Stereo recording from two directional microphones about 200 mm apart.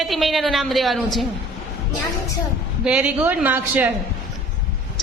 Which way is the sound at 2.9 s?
5° right (ahead or behind).